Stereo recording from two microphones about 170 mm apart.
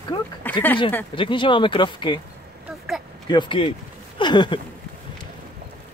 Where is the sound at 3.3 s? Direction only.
30° left (ahead or behind).